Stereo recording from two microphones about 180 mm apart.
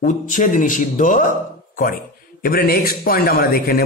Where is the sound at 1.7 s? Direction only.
50° left (ahead or behind).